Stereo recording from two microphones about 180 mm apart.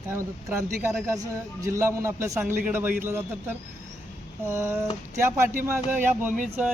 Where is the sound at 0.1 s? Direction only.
15° right (ahead or behind).